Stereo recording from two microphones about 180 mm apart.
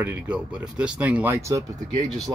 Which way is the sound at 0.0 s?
10° right (ahead or behind).